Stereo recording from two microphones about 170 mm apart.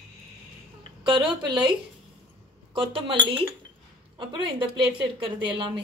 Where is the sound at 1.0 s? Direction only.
25° right (ahead or behind).